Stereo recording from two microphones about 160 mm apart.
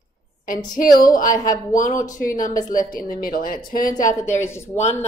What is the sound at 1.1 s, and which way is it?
A woman's voice, 55° left (ahead or behind).